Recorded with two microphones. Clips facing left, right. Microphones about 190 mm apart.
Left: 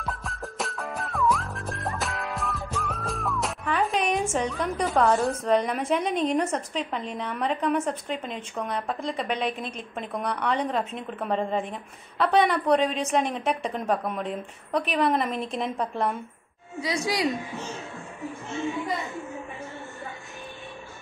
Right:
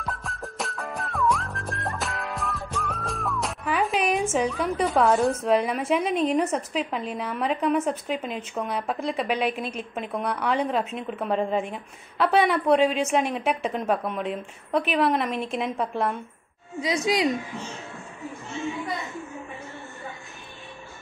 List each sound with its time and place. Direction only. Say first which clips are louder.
0.0 s whistling: even; centre (ahead or behind)
8.5 s a woman's voice: right 1 dB; 5° right (ahead or behind)
16.8 s a woman's voice: right 3 dB; 20° right (ahead or behind)